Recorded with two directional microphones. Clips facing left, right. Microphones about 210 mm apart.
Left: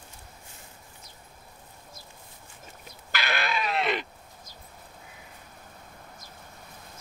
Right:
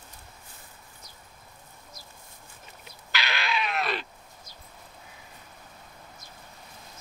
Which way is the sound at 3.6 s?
25° left (ahead or behind).